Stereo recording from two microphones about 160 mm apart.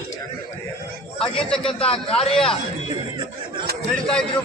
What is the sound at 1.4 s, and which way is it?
Speech, 5° left (ahead or behind).